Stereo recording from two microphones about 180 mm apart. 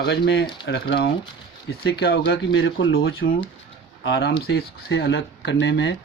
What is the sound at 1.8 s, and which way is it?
Speech, 65° left (ahead or behind).